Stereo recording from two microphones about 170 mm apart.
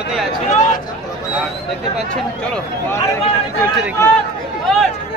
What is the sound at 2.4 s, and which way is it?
Speech, 10° left (ahead or behind).